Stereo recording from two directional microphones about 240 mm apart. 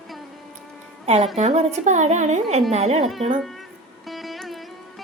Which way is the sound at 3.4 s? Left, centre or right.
Centre.